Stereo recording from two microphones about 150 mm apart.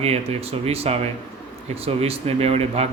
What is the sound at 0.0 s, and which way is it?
Speech, 45° right (ahead or behind).